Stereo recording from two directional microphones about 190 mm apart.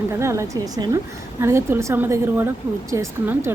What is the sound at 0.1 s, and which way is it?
A woman's voice, 15° right (ahead or behind).